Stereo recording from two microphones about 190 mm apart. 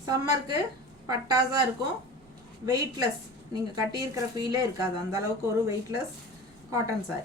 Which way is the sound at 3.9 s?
20° right (ahead or behind).